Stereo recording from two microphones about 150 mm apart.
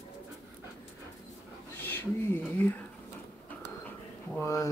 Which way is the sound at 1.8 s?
10° left (ahead or behind).